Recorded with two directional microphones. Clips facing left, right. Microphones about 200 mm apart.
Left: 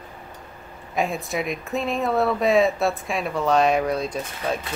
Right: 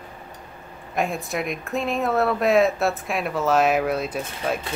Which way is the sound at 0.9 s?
Centre (ahead or behind).